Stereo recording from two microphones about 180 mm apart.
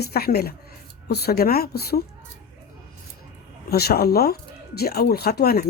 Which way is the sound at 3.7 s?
60° left (ahead or behind).